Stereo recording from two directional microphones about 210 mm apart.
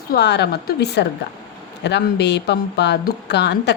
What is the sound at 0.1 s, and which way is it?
A woman's voice, 50° left (ahead or behind).